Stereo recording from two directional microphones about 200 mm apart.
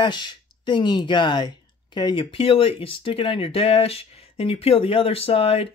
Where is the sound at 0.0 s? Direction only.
20° left (ahead or behind).